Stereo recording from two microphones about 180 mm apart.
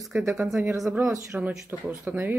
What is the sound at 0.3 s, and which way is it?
Speech, centre (ahead or behind).